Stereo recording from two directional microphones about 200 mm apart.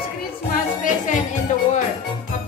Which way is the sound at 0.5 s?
40° left (ahead or behind).